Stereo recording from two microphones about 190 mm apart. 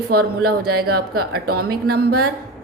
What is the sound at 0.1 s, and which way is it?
A woman's voice, 55° right (ahead or behind).